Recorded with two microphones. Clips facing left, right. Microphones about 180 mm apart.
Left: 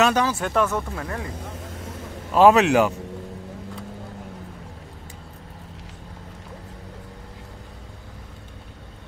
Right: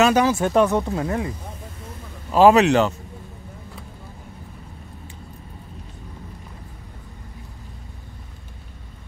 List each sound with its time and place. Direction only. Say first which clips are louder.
0.0 s speech: right 3 dB; 10° right (ahead or behind)
2.3 s a man's voice: right 1 dB; centre (ahead or behind)